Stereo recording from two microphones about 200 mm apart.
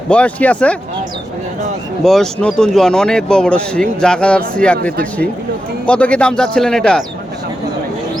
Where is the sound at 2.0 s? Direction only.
Centre (ahead or behind).